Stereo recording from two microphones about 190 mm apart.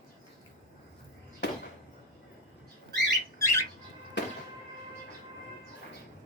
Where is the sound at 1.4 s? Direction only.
65° left (ahead or behind).